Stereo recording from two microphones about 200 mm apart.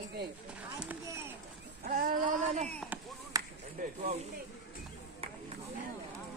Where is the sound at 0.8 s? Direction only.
10° right (ahead or behind).